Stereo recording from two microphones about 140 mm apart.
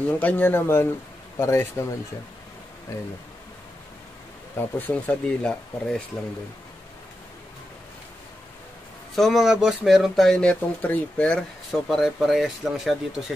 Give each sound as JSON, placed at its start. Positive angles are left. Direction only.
{"t": 0.2, "sound": "speech", "side_deg": 10}
{"t": 4.6, "sound": "speech", "side_deg": 10}
{"t": 9.1, "sound": "speech", "side_deg": 0}